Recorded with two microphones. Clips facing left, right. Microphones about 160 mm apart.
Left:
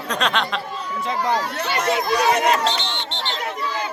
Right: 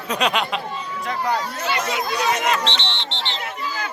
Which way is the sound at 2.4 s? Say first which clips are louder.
Left 3 dB; 40° left (ahead or behind).